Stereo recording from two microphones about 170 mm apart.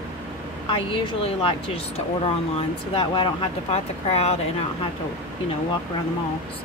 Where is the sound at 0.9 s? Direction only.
30° left (ahead or behind).